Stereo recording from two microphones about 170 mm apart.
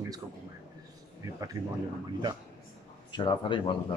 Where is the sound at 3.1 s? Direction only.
30° left (ahead or behind).